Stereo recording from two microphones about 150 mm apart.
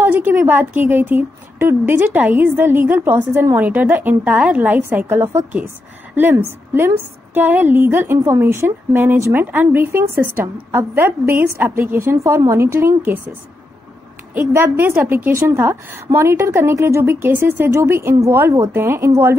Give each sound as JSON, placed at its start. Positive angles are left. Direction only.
{"t": 0.0, "sound": "a woman's voice", "side_deg": -15}